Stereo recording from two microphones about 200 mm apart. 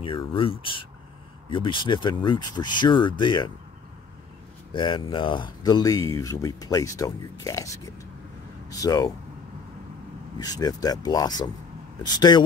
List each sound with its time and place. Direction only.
0.3 s speech: 25° left (ahead or behind)
4.7 s speech: 25° left (ahead or behind)
10.4 s speech: 20° left (ahead or behind)